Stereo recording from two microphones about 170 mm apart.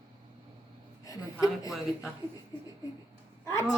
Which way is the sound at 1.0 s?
20° left (ahead or behind).